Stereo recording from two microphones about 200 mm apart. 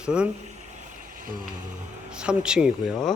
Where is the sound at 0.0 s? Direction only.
5° right (ahead or behind).